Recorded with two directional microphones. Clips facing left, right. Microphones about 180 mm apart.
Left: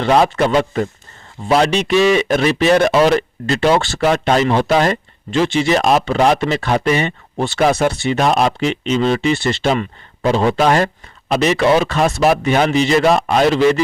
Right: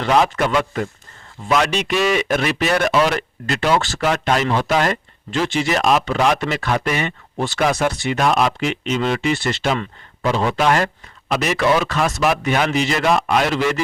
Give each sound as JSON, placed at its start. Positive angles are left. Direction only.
{"t": 0.0, "sound": "speech", "side_deg": 30}